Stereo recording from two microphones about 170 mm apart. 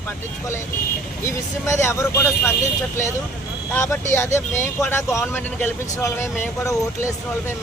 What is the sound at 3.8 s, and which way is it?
Speech, 15° left (ahead or behind).